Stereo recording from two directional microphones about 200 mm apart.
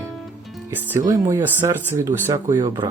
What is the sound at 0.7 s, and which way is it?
Speech, 10° right (ahead or behind).